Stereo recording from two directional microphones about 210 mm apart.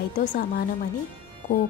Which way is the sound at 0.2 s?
40° left (ahead or behind).